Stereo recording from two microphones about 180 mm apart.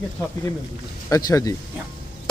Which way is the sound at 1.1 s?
20° left (ahead or behind).